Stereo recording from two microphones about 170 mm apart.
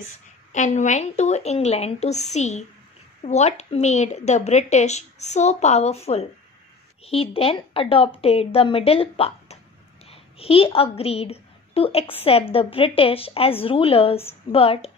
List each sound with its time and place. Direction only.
0.5 s a woman's voice: 45° left (ahead or behind)